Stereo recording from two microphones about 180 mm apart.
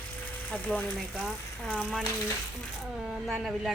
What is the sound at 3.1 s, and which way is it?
Speech, centre (ahead or behind).